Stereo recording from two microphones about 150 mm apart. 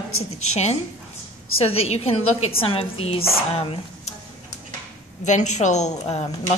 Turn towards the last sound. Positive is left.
turn(degrees=45)  # may be behind; listen again after turning